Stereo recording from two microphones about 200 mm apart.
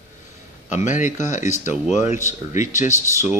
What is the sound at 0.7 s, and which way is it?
Speech, 35° left (ahead or behind).